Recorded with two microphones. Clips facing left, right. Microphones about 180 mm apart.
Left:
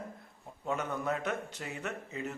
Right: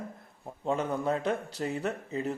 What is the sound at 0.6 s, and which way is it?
Speech, 30° right (ahead or behind).